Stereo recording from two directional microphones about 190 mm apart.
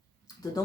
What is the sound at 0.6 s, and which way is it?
Speech, 20° left (ahead or behind).